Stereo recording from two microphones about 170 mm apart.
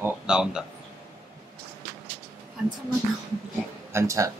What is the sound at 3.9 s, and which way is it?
Speech, 15° right (ahead or behind).